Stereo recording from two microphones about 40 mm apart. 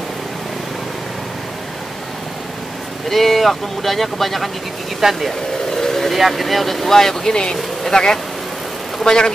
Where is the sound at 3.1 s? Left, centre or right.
Centre.